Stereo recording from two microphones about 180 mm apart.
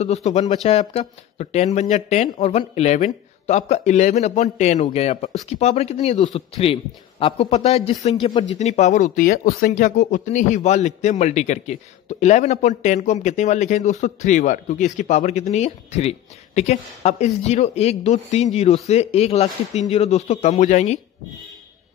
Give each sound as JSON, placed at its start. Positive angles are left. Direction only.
{"t": 0.0, "sound": "speech", "side_deg": 35}